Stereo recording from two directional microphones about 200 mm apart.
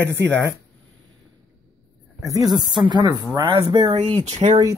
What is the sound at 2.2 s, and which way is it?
Speech, 15° right (ahead or behind).